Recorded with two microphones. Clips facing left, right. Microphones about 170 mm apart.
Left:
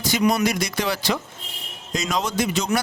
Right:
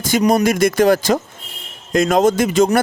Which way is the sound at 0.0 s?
45° right (ahead or behind).